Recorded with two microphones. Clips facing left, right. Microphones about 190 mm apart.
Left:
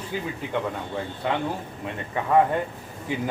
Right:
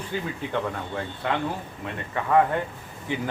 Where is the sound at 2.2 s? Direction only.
15° left (ahead or behind).